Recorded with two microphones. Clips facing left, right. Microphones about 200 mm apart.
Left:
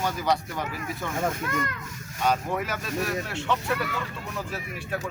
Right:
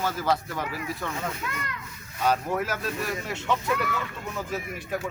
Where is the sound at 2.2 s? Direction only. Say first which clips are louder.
Right 1 dB; 5° right (ahead or behind).